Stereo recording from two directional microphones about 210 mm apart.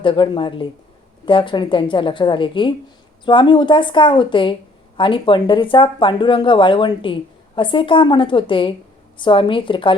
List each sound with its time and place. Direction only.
0.0 s speech: 25° left (ahead or behind)